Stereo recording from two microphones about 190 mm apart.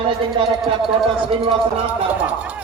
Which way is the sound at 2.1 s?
5° right (ahead or behind).